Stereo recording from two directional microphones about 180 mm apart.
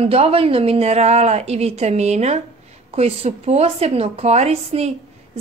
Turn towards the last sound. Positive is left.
turn(degrees=-35)  # may be behind; listen again after turning